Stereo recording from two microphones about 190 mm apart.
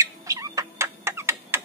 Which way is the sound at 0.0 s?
15° right (ahead or behind).